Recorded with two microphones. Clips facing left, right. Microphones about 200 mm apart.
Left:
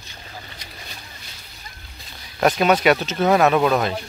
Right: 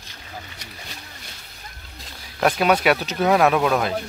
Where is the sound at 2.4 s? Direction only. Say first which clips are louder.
Left 2 dB; 5° right (ahead or behind).